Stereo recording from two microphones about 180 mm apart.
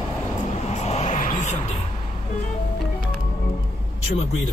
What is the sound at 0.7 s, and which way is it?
Vehicle, 35° left (ahead or behind).